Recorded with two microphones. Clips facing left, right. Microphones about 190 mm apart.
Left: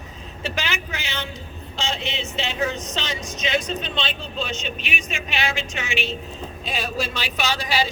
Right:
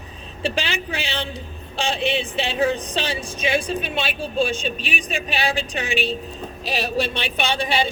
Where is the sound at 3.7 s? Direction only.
10° right (ahead or behind).